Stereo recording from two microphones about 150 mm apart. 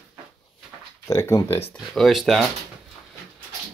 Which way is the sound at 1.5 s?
40° left (ahead or behind).